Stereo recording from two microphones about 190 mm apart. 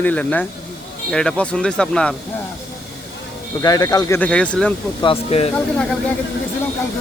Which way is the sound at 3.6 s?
20° left (ahead or behind).